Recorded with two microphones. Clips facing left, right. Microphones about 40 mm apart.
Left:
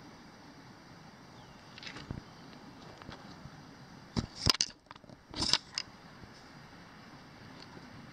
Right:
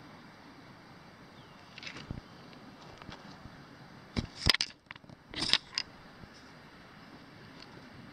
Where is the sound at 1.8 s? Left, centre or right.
Centre.